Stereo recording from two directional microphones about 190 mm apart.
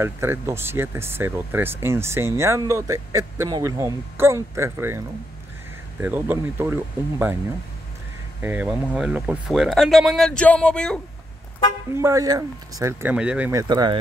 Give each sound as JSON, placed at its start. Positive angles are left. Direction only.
{"t": 0.0, "sound": "speech", "side_deg": -15}
{"t": 8.4, "sound": "speech", "side_deg": -10}
{"t": 11.9, "sound": "speech", "side_deg": -15}